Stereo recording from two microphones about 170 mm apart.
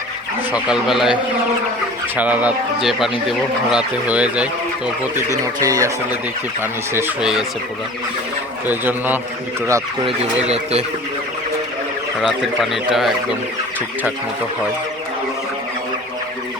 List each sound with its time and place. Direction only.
0.5 s speech: 5° right (ahead or behind)
5.5 s speech: 20° right (ahead or behind)
6.6 s speech: 10° right (ahead or behind)
8.6 s speech: 10° right (ahead or behind)
10.5 s speech: 40° right (ahead or behind)
12.2 s speech: centre (ahead or behind)